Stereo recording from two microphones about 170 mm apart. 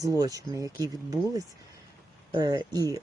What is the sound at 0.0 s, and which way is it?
Speech, 20° right (ahead or behind).